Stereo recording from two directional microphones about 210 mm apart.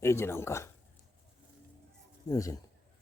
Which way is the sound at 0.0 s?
10° left (ahead or behind).